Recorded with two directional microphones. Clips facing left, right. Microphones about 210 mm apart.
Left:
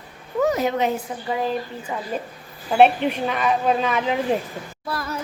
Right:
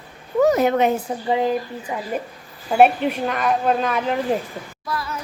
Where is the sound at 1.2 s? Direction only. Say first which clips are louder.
Right 4 dB; 20° right (ahead or behind).